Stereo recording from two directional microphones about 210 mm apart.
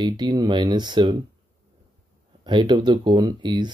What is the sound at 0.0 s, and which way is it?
Speech, 20° right (ahead or behind).